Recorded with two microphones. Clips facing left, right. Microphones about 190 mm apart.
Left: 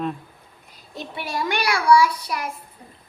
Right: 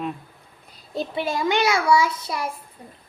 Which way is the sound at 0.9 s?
30° right (ahead or behind).